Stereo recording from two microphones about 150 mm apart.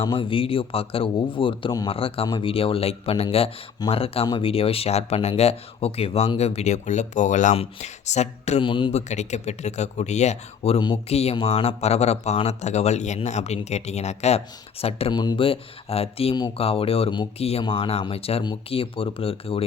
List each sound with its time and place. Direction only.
0.0 s speech: 35° left (ahead or behind); by 7.5 s 55° left (ahead or behind)
7.5 s speech: 45° left (ahead or behind)
8.6 s speech: 35° left (ahead or behind)
8.9 s speech: 50° left (ahead or behind)
15.1 s speech: 25° left (ahead or behind)